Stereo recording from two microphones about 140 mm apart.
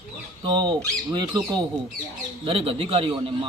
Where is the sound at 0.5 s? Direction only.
30° right (ahead or behind).